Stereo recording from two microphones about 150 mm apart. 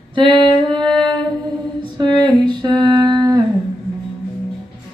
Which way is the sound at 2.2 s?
30° right (ahead or behind).